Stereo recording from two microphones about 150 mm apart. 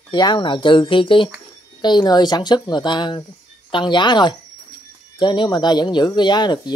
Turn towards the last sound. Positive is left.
turn(degrees=30)  # may be behind; listen again after turning